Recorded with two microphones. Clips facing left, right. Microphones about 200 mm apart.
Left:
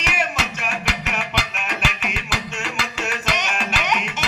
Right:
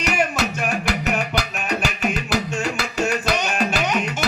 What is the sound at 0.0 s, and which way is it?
Music, 40° right (ahead or behind).